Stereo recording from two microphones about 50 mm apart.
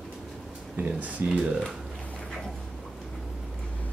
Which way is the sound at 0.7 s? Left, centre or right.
Right.